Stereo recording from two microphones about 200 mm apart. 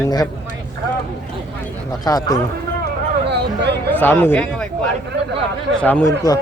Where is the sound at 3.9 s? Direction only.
10° left (ahead or behind).